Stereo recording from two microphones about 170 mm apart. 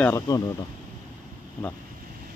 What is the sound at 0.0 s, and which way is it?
Speech, 20° left (ahead or behind).